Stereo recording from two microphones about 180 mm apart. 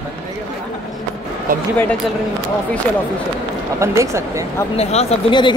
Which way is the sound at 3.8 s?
15° right (ahead or behind).